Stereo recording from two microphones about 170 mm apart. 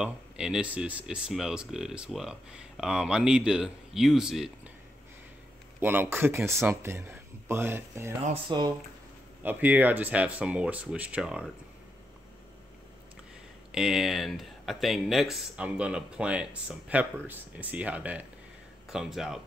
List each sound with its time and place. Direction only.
0.0 s speech: 5° right (ahead or behind)
5.8 s speech: 10° right (ahead or behind)
8.3 s speech: 25° right (ahead or behind)
9.4 s speech: 10° right (ahead or behind)
13.7 s speech: 5° right (ahead or behind)